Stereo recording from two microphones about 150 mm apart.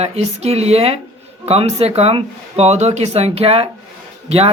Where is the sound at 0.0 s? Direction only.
45° right (ahead or behind).